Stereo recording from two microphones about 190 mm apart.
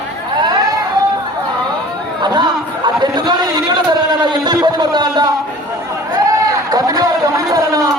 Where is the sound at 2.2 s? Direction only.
25° right (ahead or behind).